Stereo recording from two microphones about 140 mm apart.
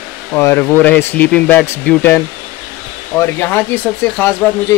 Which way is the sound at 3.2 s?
15° left (ahead or behind).